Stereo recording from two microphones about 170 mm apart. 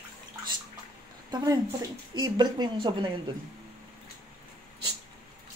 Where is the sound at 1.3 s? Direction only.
25° right (ahead or behind).